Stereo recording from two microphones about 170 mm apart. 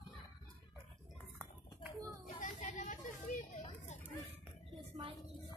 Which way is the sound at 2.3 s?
50° left (ahead or behind).